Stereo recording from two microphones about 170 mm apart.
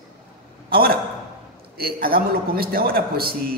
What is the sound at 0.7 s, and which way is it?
A man's voice, 60° right (ahead or behind).